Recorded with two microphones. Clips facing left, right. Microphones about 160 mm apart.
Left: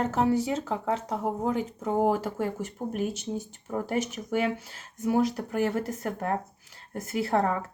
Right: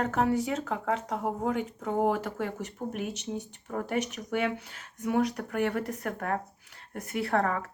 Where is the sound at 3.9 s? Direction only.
30° left (ahead or behind).